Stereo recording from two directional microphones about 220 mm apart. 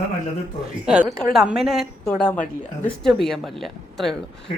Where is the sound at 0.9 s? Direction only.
5° right (ahead or behind).